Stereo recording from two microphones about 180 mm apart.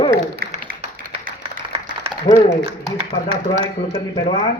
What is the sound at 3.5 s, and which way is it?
Speech, 25° left (ahead or behind).